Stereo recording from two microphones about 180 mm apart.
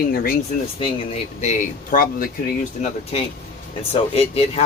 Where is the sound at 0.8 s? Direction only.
35° left (ahead or behind).